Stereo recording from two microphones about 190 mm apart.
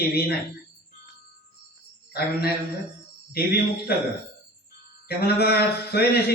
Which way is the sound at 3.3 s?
55° left (ahead or behind).